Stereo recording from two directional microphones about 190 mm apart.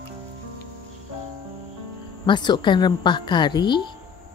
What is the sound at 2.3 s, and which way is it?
A woman's voice, 25° left (ahead or behind).